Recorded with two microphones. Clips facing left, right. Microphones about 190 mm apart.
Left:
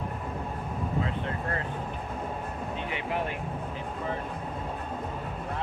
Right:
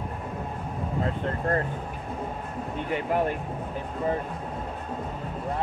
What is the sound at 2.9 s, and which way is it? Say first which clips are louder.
Speech: right 8 dB; 45° right (ahead or behind).